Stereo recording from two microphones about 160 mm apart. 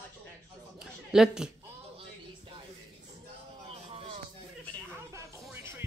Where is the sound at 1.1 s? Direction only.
5° right (ahead or behind).